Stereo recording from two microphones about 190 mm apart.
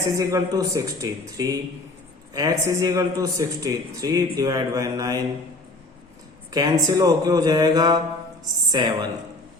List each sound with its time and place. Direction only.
0.0 s a man's voice: 15° right (ahead or behind)
6.5 s a man's voice: 20° right (ahead or behind)